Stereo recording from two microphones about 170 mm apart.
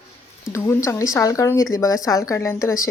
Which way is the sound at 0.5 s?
15° left (ahead or behind).